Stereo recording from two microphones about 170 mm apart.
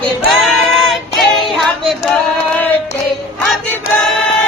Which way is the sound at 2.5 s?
10° left (ahead or behind).